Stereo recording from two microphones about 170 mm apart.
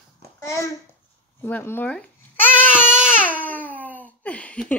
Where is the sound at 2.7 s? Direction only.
5° right (ahead or behind).